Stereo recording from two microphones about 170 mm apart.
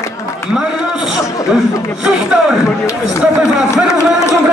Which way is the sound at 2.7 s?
15° left (ahead or behind).